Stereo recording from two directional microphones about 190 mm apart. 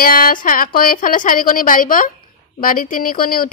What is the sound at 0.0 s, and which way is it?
Speech, 50° left (ahead or behind).